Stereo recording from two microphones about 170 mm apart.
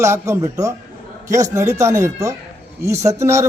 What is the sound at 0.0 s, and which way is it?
A man's voice, 15° right (ahead or behind).